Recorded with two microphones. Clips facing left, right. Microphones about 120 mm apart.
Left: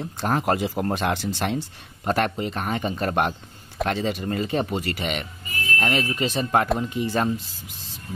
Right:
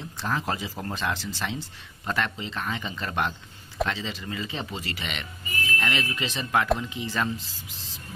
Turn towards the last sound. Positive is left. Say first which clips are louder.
# left 5 dB
turn(degrees=50)  # may be behind; listen again after turning